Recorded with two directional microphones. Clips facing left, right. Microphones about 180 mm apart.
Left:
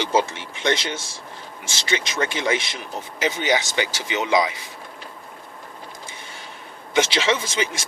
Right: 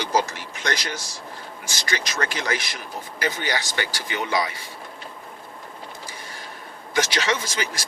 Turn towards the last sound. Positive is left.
turn(degrees=25)  # may be behind; listen again after turning